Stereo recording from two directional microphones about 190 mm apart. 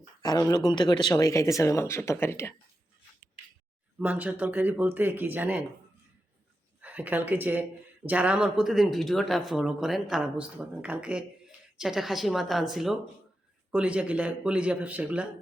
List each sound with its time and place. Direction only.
0.2 s speech: 20° left (ahead or behind)
3.9 s speech: 10° right (ahead or behind)
6.8 s speech: 10° right (ahead or behind)